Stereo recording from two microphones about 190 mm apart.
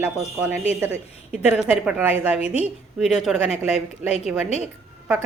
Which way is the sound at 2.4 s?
30° left (ahead or behind).